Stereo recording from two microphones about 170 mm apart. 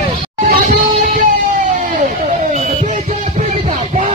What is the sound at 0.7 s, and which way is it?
Music, 55° right (ahead or behind).